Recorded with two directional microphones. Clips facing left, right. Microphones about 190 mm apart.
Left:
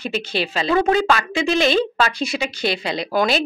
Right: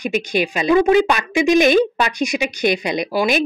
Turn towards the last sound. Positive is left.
turn(degrees=-15)  # may be behind; listen again after turning